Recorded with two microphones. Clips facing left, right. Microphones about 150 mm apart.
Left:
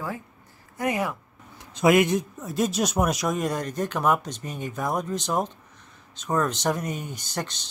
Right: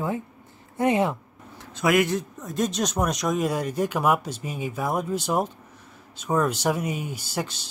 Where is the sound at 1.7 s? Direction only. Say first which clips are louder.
Left 2 dB; 20° left (ahead or behind).